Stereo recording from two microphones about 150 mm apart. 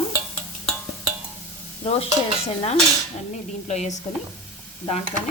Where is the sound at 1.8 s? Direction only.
40° left (ahead or behind).